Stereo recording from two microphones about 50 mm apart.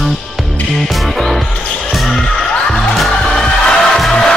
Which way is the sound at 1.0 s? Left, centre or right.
Centre.